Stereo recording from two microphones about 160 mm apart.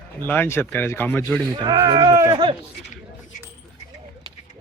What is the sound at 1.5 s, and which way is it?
Speech, 25° right (ahead or behind).